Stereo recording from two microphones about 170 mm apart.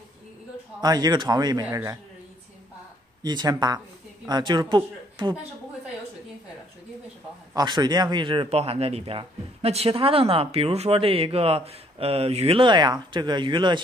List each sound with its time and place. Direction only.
0.7 s a man's voice: 25° right (ahead or behind)
3.2 s a man's voice: 25° right (ahead or behind)
7.5 s speech: 25° right (ahead or behind)